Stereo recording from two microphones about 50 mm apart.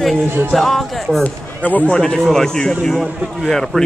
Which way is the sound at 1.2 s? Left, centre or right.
Left.